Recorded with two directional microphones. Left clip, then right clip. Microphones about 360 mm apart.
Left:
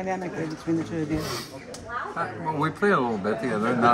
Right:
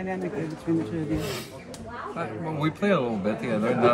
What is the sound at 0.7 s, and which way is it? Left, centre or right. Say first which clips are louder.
Speech: even; left.